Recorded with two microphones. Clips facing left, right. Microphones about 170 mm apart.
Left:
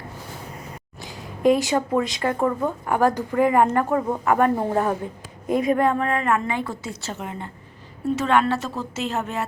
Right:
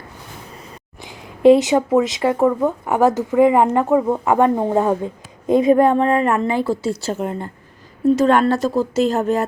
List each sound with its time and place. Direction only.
1.0 s a woman's voice: 20° right (ahead or behind); by 9.5 s 40° right (ahead or behind)